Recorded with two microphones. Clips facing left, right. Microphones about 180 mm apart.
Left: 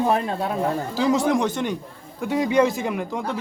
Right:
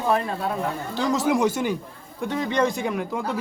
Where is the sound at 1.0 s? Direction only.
Centre (ahead or behind).